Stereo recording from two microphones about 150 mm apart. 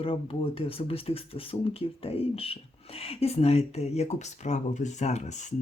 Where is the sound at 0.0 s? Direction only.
35° left (ahead or behind).